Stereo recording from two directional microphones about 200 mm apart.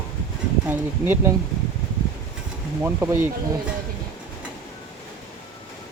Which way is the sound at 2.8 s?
10° right (ahead or behind).